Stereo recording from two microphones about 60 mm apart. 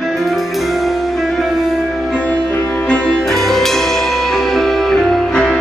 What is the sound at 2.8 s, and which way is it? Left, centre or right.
Music, centre.